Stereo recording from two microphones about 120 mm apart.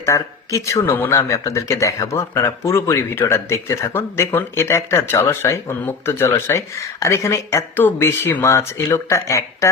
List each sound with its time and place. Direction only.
0.0 s speech: 25° left (ahead or behind)